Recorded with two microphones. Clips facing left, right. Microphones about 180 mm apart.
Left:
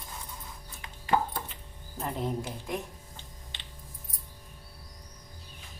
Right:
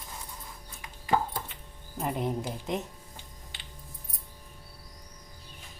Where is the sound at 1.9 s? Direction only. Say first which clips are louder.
Right 2 dB; 15° right (ahead or behind).